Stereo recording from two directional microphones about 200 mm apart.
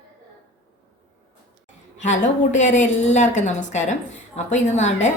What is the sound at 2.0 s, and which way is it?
A woman's voice, 35° left (ahead or behind).